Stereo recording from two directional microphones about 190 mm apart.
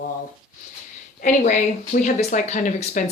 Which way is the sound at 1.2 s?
40° left (ahead or behind).